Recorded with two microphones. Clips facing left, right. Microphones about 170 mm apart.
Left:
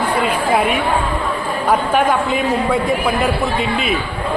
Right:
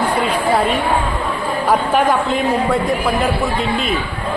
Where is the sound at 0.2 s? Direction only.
10° left (ahead or behind).